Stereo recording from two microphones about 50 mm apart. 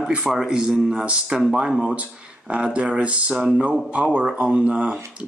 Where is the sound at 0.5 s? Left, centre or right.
Centre.